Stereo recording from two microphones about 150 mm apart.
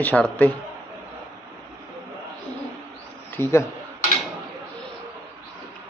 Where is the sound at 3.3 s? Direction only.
15° left (ahead or behind).